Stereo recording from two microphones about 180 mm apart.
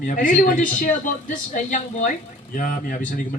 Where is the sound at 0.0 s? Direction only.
45° left (ahead or behind).